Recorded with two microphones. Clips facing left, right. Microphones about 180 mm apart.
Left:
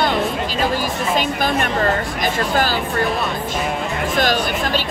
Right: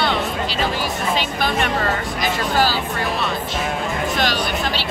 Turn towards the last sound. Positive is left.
turn(degrees=50)  # may be behind; listen again after turning